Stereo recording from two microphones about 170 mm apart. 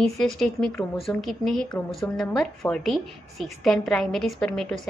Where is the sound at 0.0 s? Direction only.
Centre (ahead or behind).